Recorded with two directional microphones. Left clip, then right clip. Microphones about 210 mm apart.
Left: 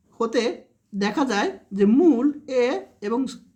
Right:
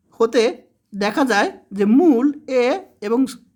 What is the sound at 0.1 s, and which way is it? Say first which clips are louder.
Speech: right 7 dB; 35° right (ahead or behind).